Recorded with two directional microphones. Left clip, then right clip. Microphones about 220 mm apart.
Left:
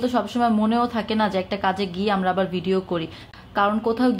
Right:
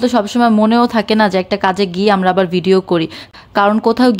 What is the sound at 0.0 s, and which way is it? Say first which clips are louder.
A woman's voice: right 8 dB; 45° right (ahead or behind).